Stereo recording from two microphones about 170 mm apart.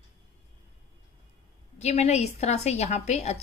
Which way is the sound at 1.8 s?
40° left (ahead or behind).